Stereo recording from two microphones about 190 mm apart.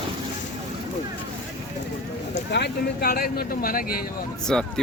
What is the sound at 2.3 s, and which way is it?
Speech, 60° left (ahead or behind).